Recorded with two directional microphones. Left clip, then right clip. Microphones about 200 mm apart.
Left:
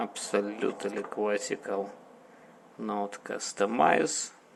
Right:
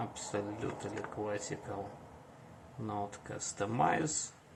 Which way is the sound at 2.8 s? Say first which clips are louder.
Left 7 dB; 30° left (ahead or behind).